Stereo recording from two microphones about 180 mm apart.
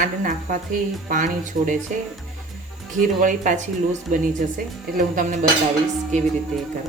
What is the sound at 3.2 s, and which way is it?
A woman's voice, 45° right (ahead or behind).